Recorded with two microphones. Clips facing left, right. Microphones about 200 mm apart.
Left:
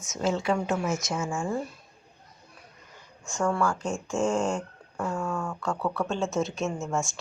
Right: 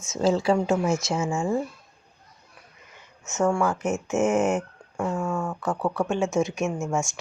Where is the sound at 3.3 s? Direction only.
20° right (ahead or behind).